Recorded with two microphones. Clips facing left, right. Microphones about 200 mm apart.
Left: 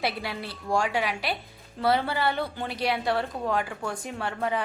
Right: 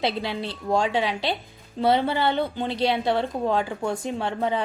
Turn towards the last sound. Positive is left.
turn(degrees=-25)  # may be behind; listen again after turning